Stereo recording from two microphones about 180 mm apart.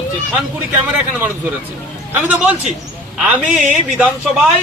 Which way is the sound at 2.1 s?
10° right (ahead or behind).